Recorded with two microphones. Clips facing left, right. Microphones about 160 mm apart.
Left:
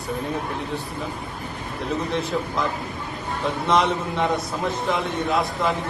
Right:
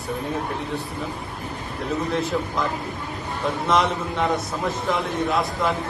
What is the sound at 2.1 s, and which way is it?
A man's voice, centre (ahead or behind).